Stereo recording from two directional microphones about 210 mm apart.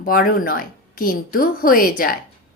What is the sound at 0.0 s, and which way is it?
A woman's voice, 40° left (ahead or behind).